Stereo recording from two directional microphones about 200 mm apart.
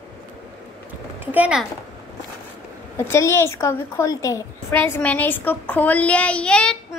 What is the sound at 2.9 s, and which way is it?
A woman's voice, 15° left (ahead or behind).